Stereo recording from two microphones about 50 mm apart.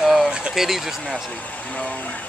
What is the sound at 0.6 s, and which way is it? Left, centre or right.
Speech, centre.